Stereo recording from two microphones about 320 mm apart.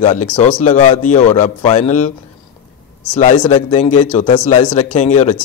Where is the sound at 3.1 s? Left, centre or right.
Left.